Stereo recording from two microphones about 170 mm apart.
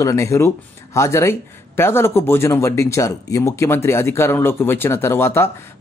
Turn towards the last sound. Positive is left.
turn(degrees=15)  # may be behind; listen again after turning